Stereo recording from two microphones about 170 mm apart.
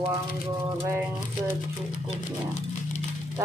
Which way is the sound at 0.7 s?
15° right (ahead or behind).